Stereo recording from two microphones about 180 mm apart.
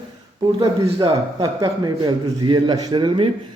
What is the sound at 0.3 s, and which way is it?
A man's voice, 20° right (ahead or behind).